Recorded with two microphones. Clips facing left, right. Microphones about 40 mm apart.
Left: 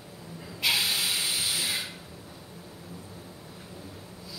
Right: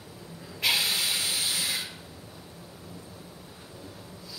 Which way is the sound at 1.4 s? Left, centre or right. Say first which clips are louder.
Even; centre.